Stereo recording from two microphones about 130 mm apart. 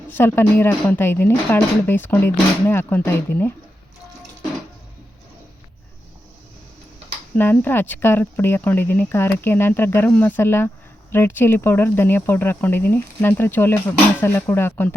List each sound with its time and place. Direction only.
0.1 s speech: 15° left (ahead or behind)
7.3 s speech: 15° left (ahead or behind)